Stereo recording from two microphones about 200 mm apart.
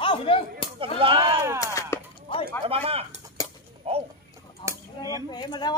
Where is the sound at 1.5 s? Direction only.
15° left (ahead or behind).